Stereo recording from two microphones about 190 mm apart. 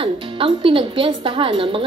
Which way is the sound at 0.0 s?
25° right (ahead or behind).